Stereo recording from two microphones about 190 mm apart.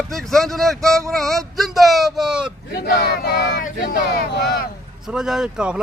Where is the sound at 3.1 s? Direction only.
60° left (ahead or behind).